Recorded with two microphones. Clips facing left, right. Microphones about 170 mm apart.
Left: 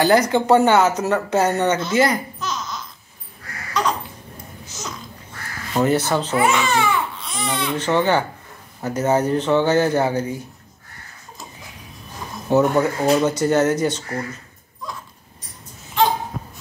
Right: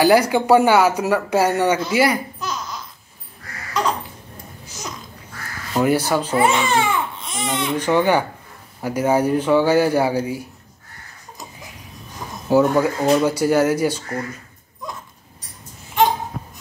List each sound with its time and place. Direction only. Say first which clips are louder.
0.0 s speech: right 1 dB; 10° right (ahead or behind)
5.7 s speech: right 1 dB; 10° right (ahead or behind)
6.3 s speech: right 1 dB; 30° right (ahead or behind); by 10.4 s 10° right (ahead or behind)
12.4 s speech: right 1 dB; 10° right (ahead or behind)
13.0 s speech: right 1 dB; 5° left (ahead or behind)
13.4 s speech: right 1 dB; 10° right (ahead or behind)